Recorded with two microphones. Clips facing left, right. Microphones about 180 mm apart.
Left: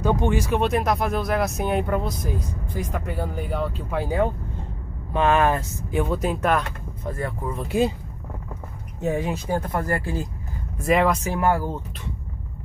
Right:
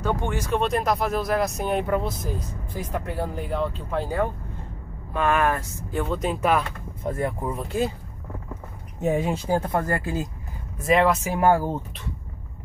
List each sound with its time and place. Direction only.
0.0 s speech: 15° left (ahead or behind)
5.1 s speech: 25° left (ahead or behind)
6.1 s speech: centre (ahead or behind)
7.0 s speech: 20° right (ahead or behind)
7.6 s speech: 15° left (ahead or behind)
9.0 s speech: 25° right (ahead or behind)
10.8 s speech: centre (ahead or behind)
11.3 s speech: 30° right (ahead or behind)